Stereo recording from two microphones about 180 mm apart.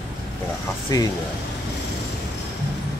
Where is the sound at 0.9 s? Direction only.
20° left (ahead or behind).